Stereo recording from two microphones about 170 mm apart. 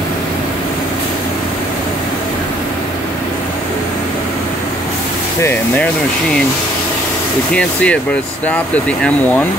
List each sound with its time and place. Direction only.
5.4 s speech: 15° left (ahead or behind)
7.5 s speech: 5° left (ahead or behind)